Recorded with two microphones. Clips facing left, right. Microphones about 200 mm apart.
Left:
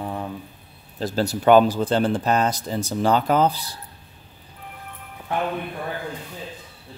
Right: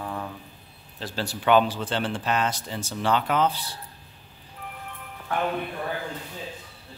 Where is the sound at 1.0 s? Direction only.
40° left (ahead or behind).